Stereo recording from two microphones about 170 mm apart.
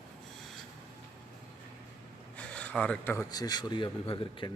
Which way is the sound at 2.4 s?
5° left (ahead or behind).